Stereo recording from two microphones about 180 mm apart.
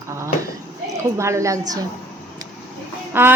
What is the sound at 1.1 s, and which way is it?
Speech, 15° right (ahead or behind).